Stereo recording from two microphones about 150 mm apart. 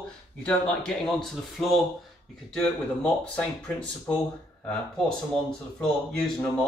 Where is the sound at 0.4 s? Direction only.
5° left (ahead or behind).